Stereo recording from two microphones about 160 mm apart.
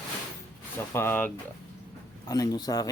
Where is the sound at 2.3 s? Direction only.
25° left (ahead or behind).